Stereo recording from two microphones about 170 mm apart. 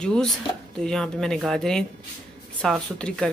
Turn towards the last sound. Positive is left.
turn(degrees=5)  # may be behind; listen again after turning